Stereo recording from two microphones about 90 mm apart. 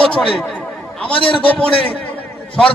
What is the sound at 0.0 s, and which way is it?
Chatter, 10° left (ahead or behind).